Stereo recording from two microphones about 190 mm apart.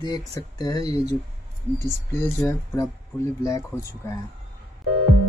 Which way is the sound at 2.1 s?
10° left (ahead or behind).